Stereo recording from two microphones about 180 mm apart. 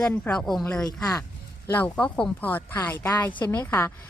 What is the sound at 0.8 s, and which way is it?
Speech, 20° left (ahead or behind).